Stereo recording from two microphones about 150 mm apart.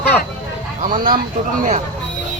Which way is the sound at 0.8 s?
70° right (ahead or behind).